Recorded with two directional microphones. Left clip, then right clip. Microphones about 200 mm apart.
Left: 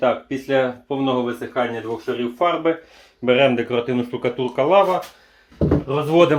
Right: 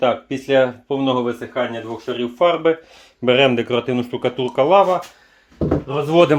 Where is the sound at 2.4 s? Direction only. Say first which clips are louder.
Right 4 dB; 55° right (ahead or behind).